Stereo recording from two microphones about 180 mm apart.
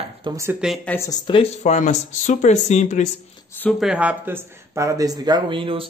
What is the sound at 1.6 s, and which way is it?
Speech, 45° left (ahead or behind).